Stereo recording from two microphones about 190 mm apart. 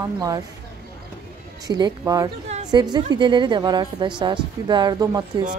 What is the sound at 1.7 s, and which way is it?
A woman's voice, 20° right (ahead or behind).